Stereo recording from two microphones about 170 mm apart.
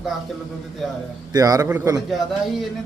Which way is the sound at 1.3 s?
20° right (ahead or behind).